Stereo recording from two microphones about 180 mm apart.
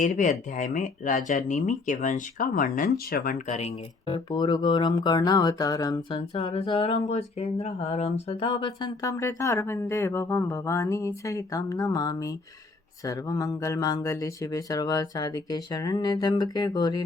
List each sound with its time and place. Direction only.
0.0 s speech: 45° left (ahead or behind)
4.0 s speech: 25° left (ahead or behind)
9.0 s speech: 20° left (ahead or behind)